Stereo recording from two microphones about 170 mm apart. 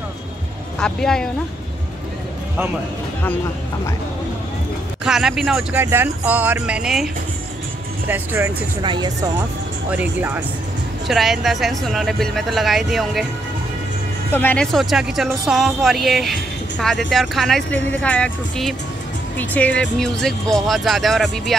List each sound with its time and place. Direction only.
0.7 s speech: 5° left (ahead or behind)
5.0 s speech: 5° right (ahead or behind)
8.1 s speech: 10° right (ahead or behind)
8.8 s speech: 25° right (ahead or behind)
9.8 s speech: 10° right (ahead or behind)
14.3 s speech: 10° left (ahead or behind)